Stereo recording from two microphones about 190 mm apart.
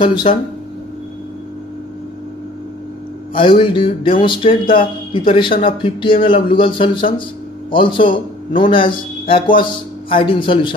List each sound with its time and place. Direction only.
0.0 s speech: 25° left (ahead or behind)
3.3 s a man's voice: 25° left (ahead or behind)